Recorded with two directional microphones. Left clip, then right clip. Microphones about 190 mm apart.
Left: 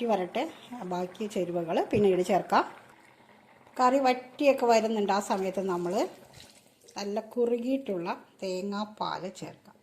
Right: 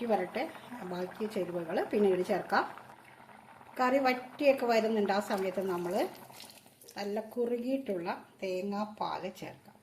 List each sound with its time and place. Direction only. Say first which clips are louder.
0.0 s speech: left 3 dB; 30° left (ahead or behind)
3.8 s a woman's voice: left 4 dB; 25° left (ahead or behind)